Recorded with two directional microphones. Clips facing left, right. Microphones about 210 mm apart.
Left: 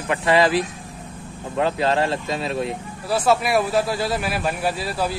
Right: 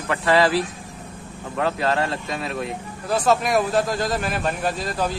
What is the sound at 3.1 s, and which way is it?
A man's voice, 5° left (ahead or behind).